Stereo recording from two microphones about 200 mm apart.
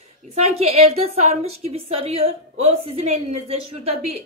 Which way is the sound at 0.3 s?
30° right (ahead or behind).